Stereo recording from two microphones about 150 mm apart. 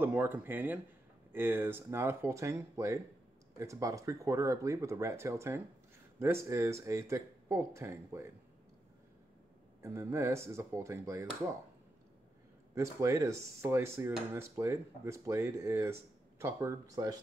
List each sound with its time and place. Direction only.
0.0 s speech: 15° right (ahead or behind)
9.8 s speech: 20° right (ahead or behind)
12.7 s speech: 20° right (ahead or behind)